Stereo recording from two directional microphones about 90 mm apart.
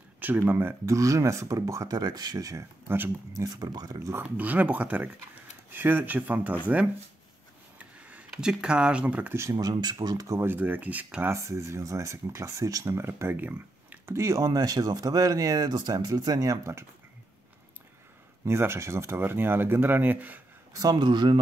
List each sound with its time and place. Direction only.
0.2 s speech: 25° right (ahead or behind)
0.9 s speech: 35° right (ahead or behind)
4.1 s speech: 20° right (ahead or behind)
8.1 s speech: 10° right (ahead or behind)
9.3 s speech: 30° right (ahead or behind)
9.6 s speech: 50° right (ahead or behind)
10.4 s speech: 20° right (ahead or behind)
11.3 s speech: 35° right (ahead or behind); by 14.1 s 20° right (ahead or behind)
14.1 s speech: 35° right (ahead or behind)
18.4 s speech: 30° right (ahead or behind)
20.7 s speech: 45° right (ahead or behind)